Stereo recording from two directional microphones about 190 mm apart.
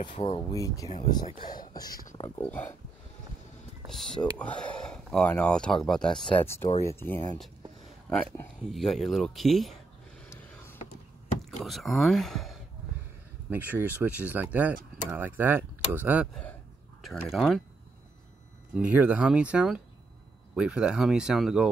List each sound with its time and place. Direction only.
0.0 s speech: 30° left (ahead or behind)
0.5 s speech: 15° left (ahead or behind)
3.9 s speech: 5° left (ahead or behind)
11.6 s speech: centre (ahead or behind)
13.5 s speech: 10° right (ahead or behind)
17.0 s speech: centre (ahead or behind)
18.8 s speech: 5° right (ahead or behind)